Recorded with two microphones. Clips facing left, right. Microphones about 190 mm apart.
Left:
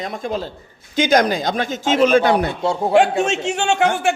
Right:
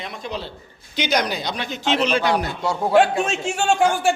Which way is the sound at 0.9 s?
45° left (ahead or behind).